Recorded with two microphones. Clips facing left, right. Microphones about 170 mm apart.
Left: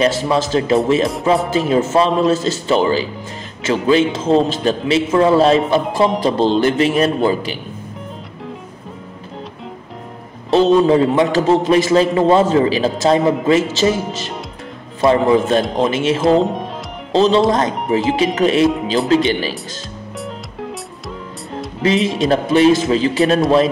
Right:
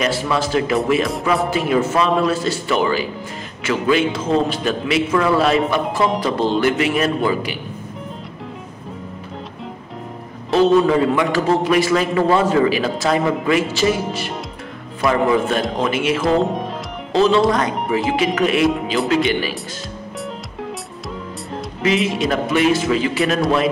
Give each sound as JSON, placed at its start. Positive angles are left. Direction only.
{"t": 0.0, "sound": "a man's voice", "side_deg": 30}
{"t": 10.5, "sound": "a man's voice", "side_deg": 30}
{"t": 15.0, "sound": "a man's voice", "side_deg": 30}
{"t": 22.2, "sound": "a man's voice", "side_deg": 30}